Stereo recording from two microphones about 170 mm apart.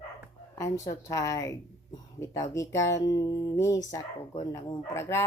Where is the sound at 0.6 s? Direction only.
20° left (ahead or behind).